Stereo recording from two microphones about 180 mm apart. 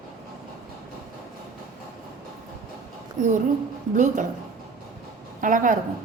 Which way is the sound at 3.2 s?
45° right (ahead or behind).